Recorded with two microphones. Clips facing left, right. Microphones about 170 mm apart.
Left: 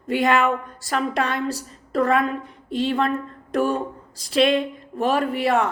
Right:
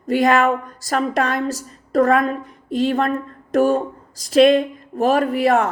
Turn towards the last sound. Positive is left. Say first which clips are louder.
# right 4 dB
turn(degrees=-45)  # may be behind; listen again after turning